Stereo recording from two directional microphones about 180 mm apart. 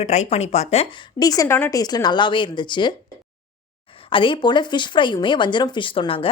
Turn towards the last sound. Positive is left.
turn(degrees=30)  # may be behind; listen again after turning